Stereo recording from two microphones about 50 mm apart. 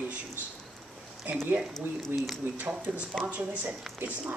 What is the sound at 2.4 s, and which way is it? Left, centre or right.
Speech, right.